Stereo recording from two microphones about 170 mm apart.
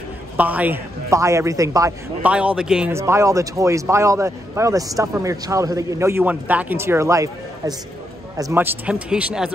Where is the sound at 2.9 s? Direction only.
15° right (ahead or behind).